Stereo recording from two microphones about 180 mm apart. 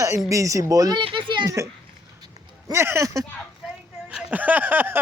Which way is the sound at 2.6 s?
15° right (ahead or behind).